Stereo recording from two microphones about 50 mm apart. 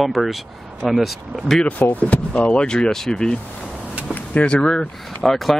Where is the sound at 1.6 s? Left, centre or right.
Left.